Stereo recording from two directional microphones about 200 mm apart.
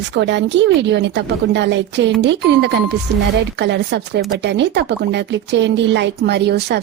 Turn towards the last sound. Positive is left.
turn(degrees=-55)  # may be behind; listen again after turning